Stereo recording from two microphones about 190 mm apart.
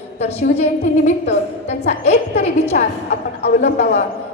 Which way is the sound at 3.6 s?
35° left (ahead or behind).